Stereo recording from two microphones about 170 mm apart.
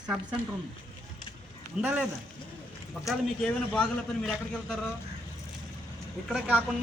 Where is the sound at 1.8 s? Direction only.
10° right (ahead or behind).